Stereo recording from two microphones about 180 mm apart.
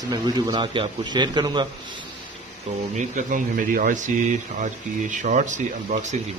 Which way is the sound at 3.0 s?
45° right (ahead or behind).